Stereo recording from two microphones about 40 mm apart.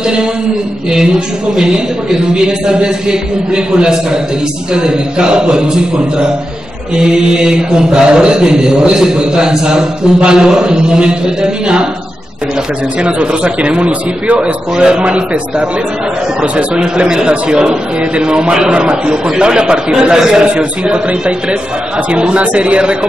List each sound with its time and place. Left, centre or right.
1.6 s mantra: centre
13.0 s mantra: right
14.8 s a man's voice: centre
16.8 s mantra: right
20.5 s mantra: right
22.2 s a man's voice: right